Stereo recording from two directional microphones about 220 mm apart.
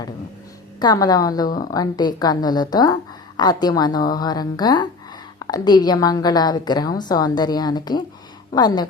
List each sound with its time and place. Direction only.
0.8 s a woman's voice: 15° left (ahead or behind)